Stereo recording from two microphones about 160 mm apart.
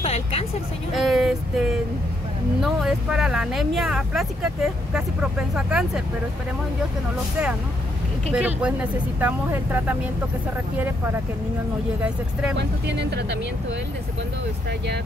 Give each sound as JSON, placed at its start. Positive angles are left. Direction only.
{"t": 0.0, "sound": "vehicle", "side_deg": 40}
{"t": 0.9, "sound": "a sound", "side_deg": 0}
{"t": 2.6, "sound": "speech", "side_deg": 0}
{"t": 8.3, "sound": "speech", "side_deg": -5}
{"t": 12.0, "sound": "speech", "side_deg": -5}
{"t": 12.5, "sound": "speech", "side_deg": -90}